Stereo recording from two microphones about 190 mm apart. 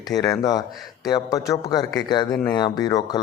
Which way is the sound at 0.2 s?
20° left (ahead or behind).